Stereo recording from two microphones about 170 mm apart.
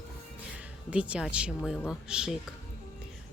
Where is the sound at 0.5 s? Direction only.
5° right (ahead or behind).